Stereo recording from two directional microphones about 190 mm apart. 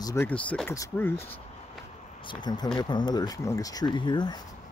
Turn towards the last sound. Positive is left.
turn(degrees=25)  # may be behind; listen again after turning